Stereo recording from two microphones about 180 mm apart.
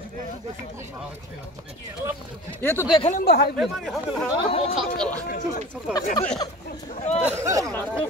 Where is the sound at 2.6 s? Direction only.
15° left (ahead or behind).